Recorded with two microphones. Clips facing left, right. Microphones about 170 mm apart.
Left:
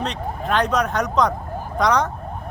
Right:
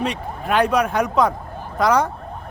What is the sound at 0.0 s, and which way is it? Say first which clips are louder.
Speech: right 1 dB; 10° right (ahead or behind).